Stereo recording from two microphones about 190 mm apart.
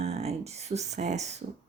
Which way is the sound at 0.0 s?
35° right (ahead or behind).